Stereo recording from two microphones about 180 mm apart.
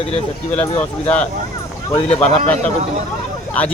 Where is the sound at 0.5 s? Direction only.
10° left (ahead or behind).